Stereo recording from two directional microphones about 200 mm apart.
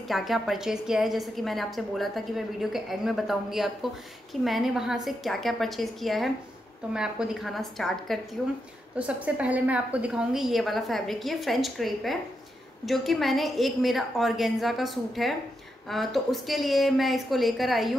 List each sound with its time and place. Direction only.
0.1 s a woman's voice: centre (ahead or behind)